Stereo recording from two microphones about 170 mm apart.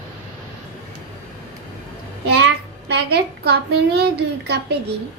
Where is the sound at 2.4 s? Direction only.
75° right (ahead or behind).